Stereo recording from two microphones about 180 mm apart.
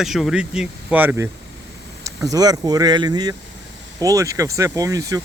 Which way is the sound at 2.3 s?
20° right (ahead or behind).